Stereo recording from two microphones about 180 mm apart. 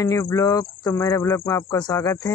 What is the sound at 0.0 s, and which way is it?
Speech, 20° left (ahead or behind).